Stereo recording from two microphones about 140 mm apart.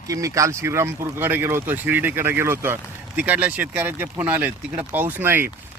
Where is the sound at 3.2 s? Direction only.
10° right (ahead or behind).